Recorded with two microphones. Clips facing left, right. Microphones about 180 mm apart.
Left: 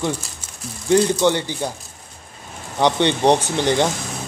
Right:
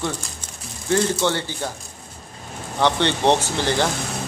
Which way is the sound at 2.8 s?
15° left (ahead or behind).